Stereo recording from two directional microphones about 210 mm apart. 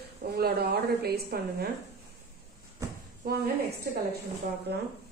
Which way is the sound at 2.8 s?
15° right (ahead or behind).